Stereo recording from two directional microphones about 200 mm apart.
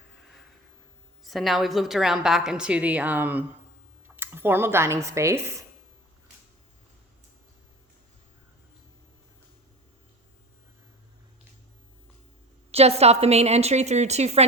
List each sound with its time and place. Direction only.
1.2 s a woman's voice: centre (ahead or behind)
12.7 s a woman's voice: 30° right (ahead or behind)